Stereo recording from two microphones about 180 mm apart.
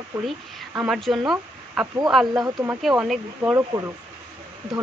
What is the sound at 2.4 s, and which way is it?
Speech, 15° right (ahead or behind).